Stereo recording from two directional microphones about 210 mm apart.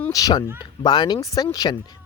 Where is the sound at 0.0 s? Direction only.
15° left (ahead or behind).